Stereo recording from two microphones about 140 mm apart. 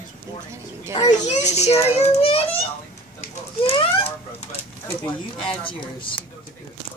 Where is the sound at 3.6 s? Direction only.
40° left (ahead or behind).